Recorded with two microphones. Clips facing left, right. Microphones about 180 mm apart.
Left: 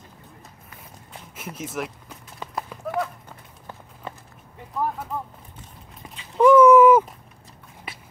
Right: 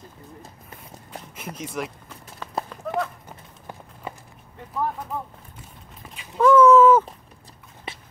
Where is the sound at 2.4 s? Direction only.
15° left (ahead or behind).